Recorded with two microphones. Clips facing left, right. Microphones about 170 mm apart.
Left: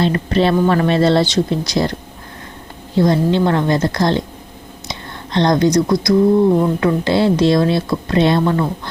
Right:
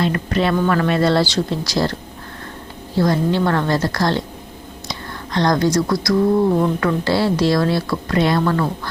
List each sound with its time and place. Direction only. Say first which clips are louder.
0.0 s a woman's voice: left 3 dB; 30° left (ahead or behind)